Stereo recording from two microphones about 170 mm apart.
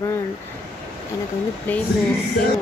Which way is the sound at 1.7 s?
10° left (ahead or behind).